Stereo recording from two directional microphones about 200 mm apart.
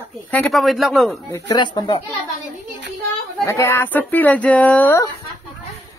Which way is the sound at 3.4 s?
15° left (ahead or behind).